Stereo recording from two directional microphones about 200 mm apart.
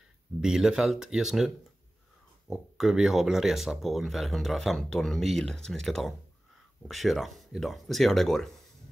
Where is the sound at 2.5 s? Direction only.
5° right (ahead or behind).